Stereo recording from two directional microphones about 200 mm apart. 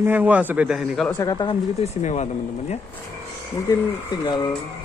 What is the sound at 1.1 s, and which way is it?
Speech, 20° left (ahead or behind).